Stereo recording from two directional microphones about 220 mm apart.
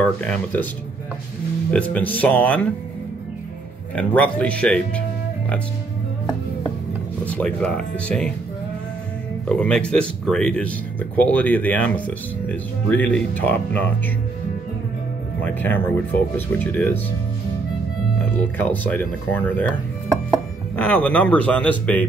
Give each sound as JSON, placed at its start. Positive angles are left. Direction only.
{"t": 0.0, "sound": "speech", "side_deg": 5}
{"t": 1.7, "sound": "speech", "side_deg": 5}
{"t": 3.9, "sound": "speech", "side_deg": 5}
{"t": 7.2, "sound": "speech", "side_deg": 5}
{"t": 9.5, "sound": "speech", "side_deg": 5}
{"t": 15.4, "sound": "speech", "side_deg": 10}
{"t": 18.3, "sound": "speech", "side_deg": 10}
{"t": 20.7, "sound": "speech", "side_deg": 5}